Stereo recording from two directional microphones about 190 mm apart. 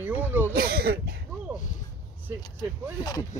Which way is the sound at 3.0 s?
20° left (ahead or behind).